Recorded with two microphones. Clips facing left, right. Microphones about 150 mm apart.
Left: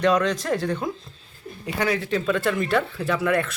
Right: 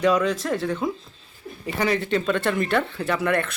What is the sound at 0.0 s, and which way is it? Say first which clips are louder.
Speech: even; 5° right (ahead or behind).